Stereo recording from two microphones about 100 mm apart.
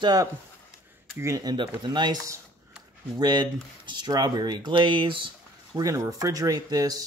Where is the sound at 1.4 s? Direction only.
45° right (ahead or behind).